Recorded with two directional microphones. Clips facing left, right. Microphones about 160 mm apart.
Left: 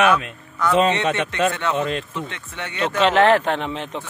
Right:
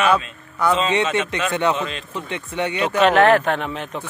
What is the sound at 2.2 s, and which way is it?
Speech, 15° right (ahead or behind).